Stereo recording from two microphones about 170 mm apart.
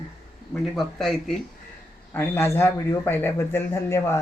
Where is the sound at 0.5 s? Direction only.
Centre (ahead or behind).